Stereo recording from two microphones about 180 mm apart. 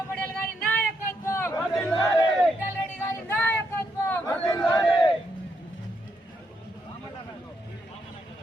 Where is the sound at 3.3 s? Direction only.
10° left (ahead or behind).